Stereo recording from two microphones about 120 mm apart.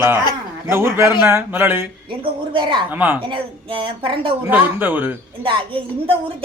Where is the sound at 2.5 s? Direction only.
45° right (ahead or behind).